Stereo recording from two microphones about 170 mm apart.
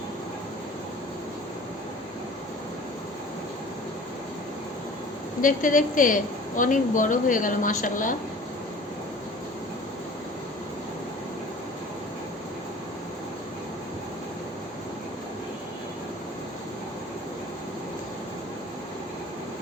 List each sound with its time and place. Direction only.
5.4 s speech: 50° left (ahead or behind)